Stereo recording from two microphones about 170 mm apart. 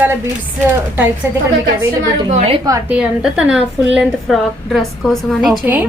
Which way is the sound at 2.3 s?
35° right (ahead or behind).